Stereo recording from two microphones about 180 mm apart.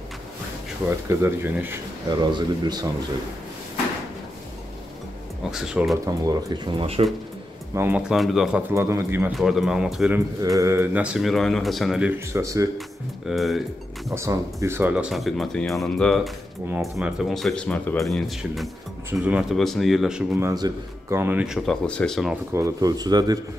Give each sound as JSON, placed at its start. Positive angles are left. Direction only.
{"t": 0.8, "sound": "speech", "side_deg": -15}
{"t": 2.0, "sound": "speech", "side_deg": -25}
{"t": 5.5, "sound": "speech", "side_deg": -5}
{"t": 6.0, "sound": "speech", "side_deg": -20}
{"t": 7.7, "sound": "speech", "side_deg": -10}
{"t": 9.3, "sound": "speech", "side_deg": 0}
{"t": 10.1, "sound": "speech", "side_deg": -15}
{"t": 13.3, "sound": "speech", "side_deg": 0}
{"t": 14.1, "sound": "speech", "side_deg": -15}
{"t": 21.6, "sound": "speech", "side_deg": 5}
{"t": 22.5, "sound": "speech", "side_deg": -15}